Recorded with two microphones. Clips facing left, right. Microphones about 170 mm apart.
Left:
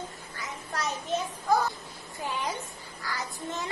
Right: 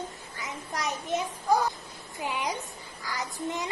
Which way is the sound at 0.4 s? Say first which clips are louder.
Even; 15° right (ahead or behind).